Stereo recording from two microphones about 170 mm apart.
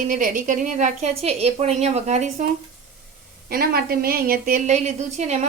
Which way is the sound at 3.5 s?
65° right (ahead or behind).